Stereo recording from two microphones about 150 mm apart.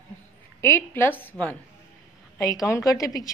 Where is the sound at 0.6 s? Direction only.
15° left (ahead or behind).